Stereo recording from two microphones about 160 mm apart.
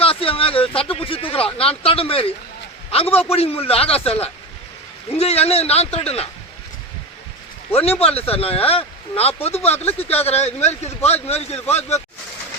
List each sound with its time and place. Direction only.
0.0 s a sound: 35° left (ahead or behind)
2.9 s a man's voice: 35° left (ahead or behind)
7.7 s speech: 40° left (ahead or behind)